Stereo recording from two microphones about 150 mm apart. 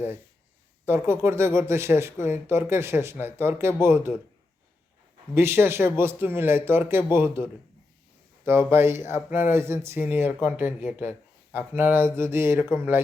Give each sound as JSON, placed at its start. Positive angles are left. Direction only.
{"t": 0.9, "sound": "speech", "side_deg": -15}
{"t": 5.3, "sound": "speech", "side_deg": -15}
{"t": 8.4, "sound": "speech", "side_deg": -15}